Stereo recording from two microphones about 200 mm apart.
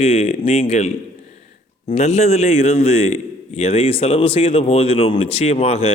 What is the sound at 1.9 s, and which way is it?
A man's voice, 35° left (ahead or behind).